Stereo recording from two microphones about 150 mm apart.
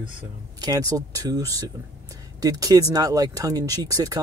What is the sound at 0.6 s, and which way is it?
A man's voice, 25° right (ahead or behind).